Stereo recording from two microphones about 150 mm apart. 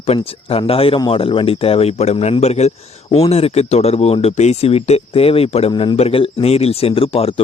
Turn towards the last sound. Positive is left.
turn(degrees=40)  # may be behind; listen again after turning